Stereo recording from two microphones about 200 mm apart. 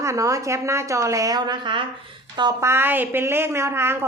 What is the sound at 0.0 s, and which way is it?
A woman's voice, 15° right (ahead or behind).